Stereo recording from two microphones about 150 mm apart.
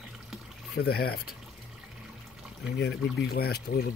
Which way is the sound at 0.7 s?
90° left.